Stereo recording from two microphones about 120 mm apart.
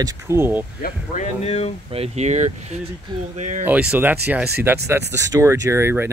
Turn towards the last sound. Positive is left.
turn(degrees=-20)  # may be behind; listen again after turning